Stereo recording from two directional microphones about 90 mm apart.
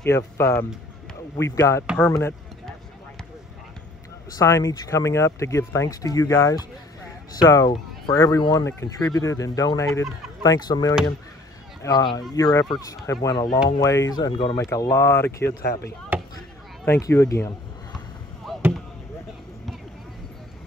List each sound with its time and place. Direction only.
0.0 s speech: 35° left (ahead or behind)
4.4 s speech: 35° left (ahead or behind)
14.3 s speech: 90° left
14.6 s speech: 35° left (ahead or behind)
16.1 s chop: 20° right (ahead or behind)
17.1 s speech: 30° left (ahead or behind)
18.6 s basketball bounce: 25° right (ahead or behind)